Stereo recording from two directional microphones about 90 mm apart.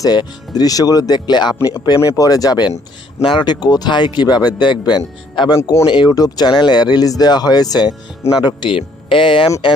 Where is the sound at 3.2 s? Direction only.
55° left (ahead or behind).